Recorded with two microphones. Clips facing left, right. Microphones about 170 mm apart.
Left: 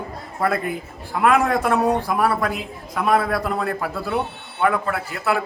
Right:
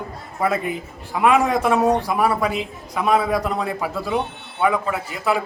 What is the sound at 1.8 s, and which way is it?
Speech, 20° right (ahead or behind).